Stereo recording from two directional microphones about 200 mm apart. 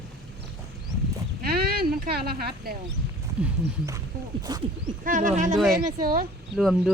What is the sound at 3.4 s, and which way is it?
Speech, 5° right (ahead or behind).